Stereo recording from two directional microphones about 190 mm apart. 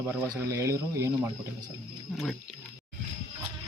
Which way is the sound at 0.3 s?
15° right (ahead or behind).